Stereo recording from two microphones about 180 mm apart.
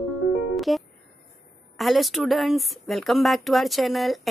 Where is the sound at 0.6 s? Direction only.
Centre (ahead or behind).